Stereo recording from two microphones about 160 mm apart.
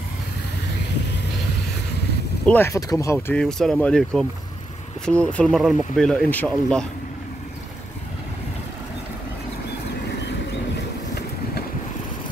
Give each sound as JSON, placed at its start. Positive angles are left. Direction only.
{"t": 2.4, "sound": "speech", "side_deg": 10}
{"t": 3.3, "sound": "speech", "side_deg": 5}